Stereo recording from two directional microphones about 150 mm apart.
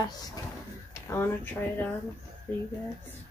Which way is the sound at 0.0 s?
25° left (ahead or behind).